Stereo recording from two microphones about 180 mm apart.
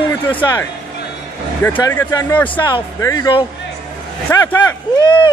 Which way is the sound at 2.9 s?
20° left (ahead or behind).